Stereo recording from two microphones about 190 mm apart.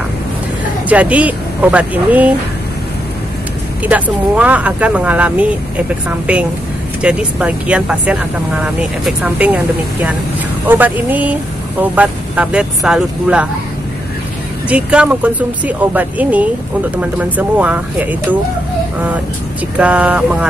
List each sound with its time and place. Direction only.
0.8 s speech: 10° right (ahead or behind)
3.8 s speech: 10° right (ahead or behind)
10.7 s speech: 10° right (ahead or behind)
14.7 s speech: 5° right (ahead or behind)
19.8 s speech: 5° right (ahead or behind)